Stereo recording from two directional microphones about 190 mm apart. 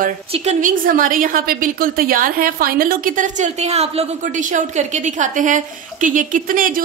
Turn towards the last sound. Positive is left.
turn(degrees=-45)  # may be behind; listen again after turning